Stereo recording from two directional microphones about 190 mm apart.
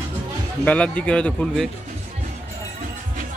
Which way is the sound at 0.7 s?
5° left (ahead or behind).